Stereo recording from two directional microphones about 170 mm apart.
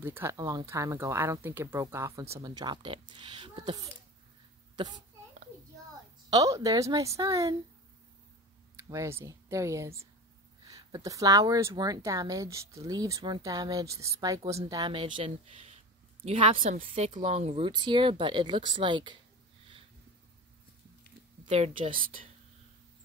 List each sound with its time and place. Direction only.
0.0 s a child's voice: 15° right (ahead or behind)
6.3 s speech: 20° right (ahead or behind)
8.8 s a woman's voice: 15° right (ahead or behind); by 16.5 s 35° right (ahead or behind)
16.7 s speech: 50° right (ahead or behind); by 19.1 s 30° right (ahead or behind)
21.5 s a woman's voice: 35° right (ahead or behind)